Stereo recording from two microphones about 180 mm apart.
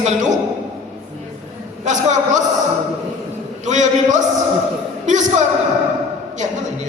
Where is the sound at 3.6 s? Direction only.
40° right (ahead or behind).